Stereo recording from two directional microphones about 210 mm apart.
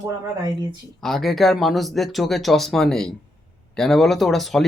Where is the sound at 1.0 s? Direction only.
Centre (ahead or behind).